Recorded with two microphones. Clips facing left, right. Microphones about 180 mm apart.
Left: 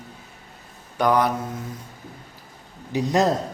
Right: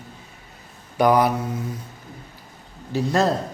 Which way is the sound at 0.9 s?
10° right (ahead or behind).